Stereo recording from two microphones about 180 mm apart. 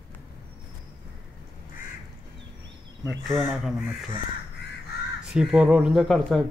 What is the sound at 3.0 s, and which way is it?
Speech, centre (ahead or behind).